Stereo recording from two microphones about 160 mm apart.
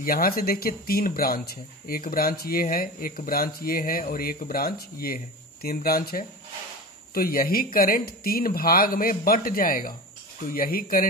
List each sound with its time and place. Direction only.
0.0 s speech: 65° left (ahead or behind)